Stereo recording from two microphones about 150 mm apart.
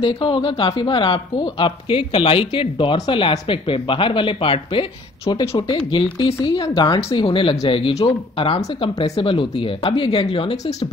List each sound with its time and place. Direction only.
0.0 s speech: 35° left (ahead or behind)